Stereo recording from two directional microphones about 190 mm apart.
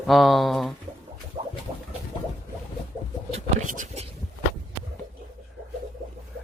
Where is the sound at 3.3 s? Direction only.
40° right (ahead or behind).